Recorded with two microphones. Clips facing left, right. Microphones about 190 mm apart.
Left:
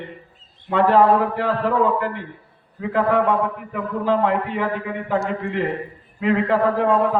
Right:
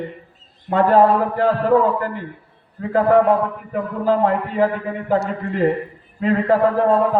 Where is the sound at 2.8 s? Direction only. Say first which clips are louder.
Right 4 dB; 40° right (ahead or behind).